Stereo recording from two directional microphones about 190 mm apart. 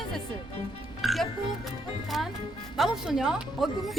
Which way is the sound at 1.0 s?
Centre (ahead or behind).